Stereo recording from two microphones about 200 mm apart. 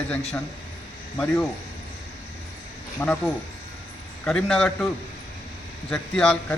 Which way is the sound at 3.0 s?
10° left (ahead or behind).